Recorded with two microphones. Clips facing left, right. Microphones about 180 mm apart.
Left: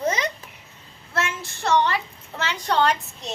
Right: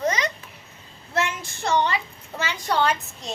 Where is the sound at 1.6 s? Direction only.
15° right (ahead or behind).